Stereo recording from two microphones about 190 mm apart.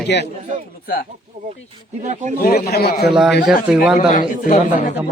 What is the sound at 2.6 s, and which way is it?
Speech, 55° left (ahead or behind).